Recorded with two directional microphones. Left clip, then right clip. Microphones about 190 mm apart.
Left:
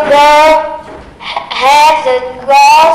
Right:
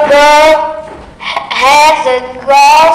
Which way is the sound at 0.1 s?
15° right (ahead or behind).